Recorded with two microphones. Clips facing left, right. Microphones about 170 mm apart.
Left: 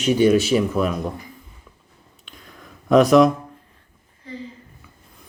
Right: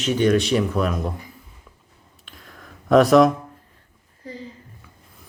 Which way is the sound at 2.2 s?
Centre (ahead or behind).